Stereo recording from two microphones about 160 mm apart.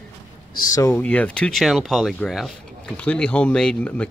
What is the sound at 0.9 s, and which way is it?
Speech, 10° left (ahead or behind).